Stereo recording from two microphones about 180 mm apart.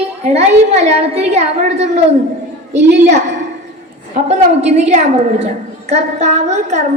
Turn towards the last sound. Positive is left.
turn(degrees=-40)  # may be behind; listen again after turning